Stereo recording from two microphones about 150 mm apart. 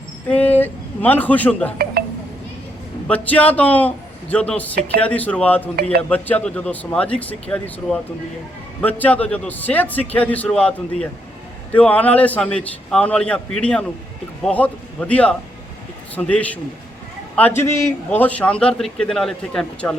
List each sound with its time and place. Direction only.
0.3 s speech: 10° left (ahead or behind)
2.0 s a sound: 90° right
3.1 s a man's voice: 10° left (ahead or behind)